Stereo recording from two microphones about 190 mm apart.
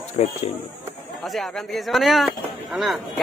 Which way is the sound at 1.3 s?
Centre (ahead or behind).